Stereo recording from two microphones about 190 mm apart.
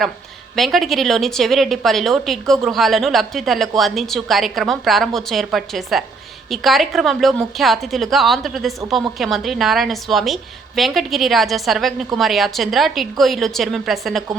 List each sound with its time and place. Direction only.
0.5 s speech: centre (ahead or behind)